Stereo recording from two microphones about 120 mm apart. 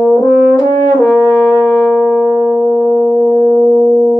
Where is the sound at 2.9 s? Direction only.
25° left (ahead or behind).